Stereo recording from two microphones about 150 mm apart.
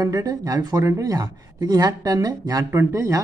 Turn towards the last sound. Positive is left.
turn(degrees=-20)  # may be behind; listen again after turning